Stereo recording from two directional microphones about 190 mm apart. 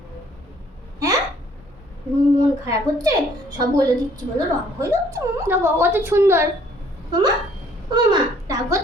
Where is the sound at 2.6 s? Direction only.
20° right (ahead or behind).